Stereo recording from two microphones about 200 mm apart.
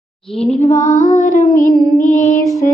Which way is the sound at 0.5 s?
40° left (ahead or behind).